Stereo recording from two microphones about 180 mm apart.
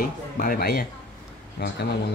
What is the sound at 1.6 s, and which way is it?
Speech, 70° left (ahead or behind).